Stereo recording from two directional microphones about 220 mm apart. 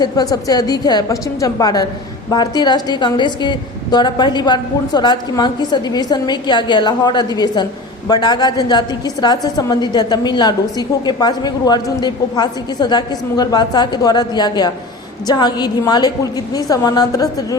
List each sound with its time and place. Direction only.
0.0 s a woman's voice: 15° left (ahead or behind)